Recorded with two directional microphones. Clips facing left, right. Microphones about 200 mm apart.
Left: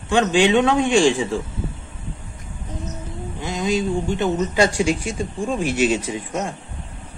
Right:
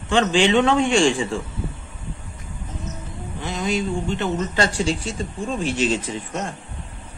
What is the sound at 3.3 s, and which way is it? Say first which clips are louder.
Speech: left 2 dB; 15° left (ahead or behind).